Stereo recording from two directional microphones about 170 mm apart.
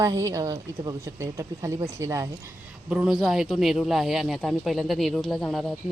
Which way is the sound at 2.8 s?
5° right (ahead or behind).